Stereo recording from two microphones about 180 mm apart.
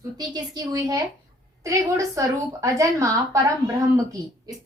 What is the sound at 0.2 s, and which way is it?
A woman's voice, 20° right (ahead or behind).